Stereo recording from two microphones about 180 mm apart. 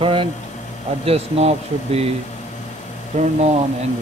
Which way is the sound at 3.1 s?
40° right (ahead or behind).